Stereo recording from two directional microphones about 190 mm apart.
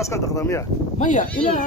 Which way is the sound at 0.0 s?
15° left (ahead or behind).